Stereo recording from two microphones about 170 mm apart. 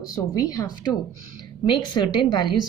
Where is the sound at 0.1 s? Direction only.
20° left (ahead or behind).